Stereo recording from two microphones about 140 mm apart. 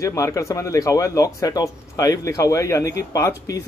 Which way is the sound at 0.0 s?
25° left (ahead or behind).